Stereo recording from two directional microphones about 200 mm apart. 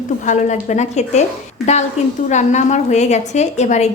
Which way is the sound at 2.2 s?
35° left (ahead or behind).